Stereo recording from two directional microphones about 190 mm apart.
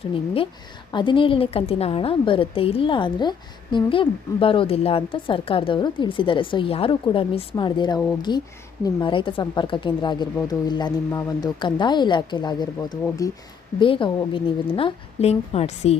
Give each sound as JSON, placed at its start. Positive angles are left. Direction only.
{"t": 0.9, "sound": "a woman's voice", "side_deg": 25}